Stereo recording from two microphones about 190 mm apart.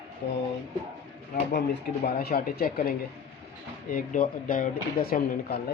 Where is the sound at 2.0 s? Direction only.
55° left (ahead or behind).